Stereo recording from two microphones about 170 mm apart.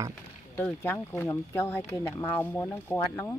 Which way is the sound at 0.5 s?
15° left (ahead or behind).